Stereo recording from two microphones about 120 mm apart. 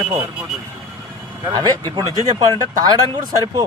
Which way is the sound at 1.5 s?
40° right (ahead or behind).